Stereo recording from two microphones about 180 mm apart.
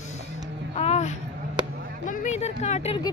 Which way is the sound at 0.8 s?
40° left (ahead or behind).